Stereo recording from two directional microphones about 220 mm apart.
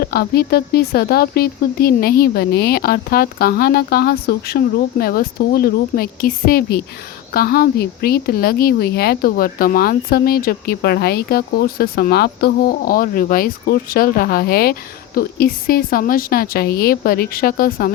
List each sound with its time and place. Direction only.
0.0 s a woman's voice: 45° left (ahead or behind)